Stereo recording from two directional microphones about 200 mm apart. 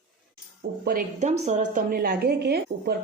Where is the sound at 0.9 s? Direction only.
40° right (ahead or behind).